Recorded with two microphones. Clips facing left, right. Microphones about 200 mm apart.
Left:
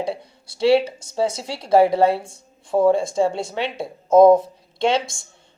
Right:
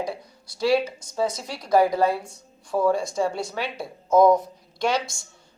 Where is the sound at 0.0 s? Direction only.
30° left (ahead or behind).